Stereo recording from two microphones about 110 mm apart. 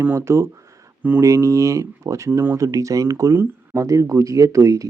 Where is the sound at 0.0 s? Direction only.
20° right (ahead or behind).